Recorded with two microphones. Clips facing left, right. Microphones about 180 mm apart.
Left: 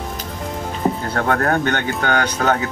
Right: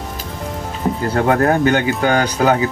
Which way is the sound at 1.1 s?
15° right (ahead or behind).